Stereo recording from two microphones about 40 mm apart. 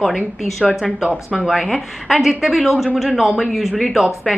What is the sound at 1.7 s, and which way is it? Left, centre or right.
A woman's voice, centre.